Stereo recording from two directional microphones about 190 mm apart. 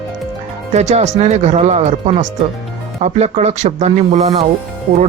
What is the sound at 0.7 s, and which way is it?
Speech, 35° right (ahead or behind).